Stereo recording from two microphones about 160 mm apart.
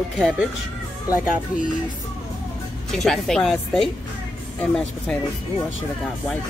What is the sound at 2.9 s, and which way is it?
Speech, centre (ahead or behind).